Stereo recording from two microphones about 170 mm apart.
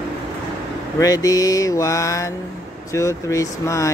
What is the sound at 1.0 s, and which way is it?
Mantra, 20° left (ahead or behind).